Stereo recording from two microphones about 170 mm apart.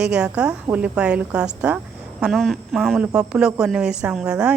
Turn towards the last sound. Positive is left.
turn(degrees=-5)  # may be behind; listen again after turning